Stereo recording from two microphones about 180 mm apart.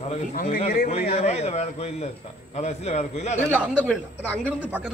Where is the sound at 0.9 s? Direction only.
35° left (ahead or behind).